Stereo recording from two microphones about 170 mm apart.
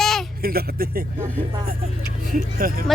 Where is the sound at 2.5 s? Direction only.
60° right (ahead or behind).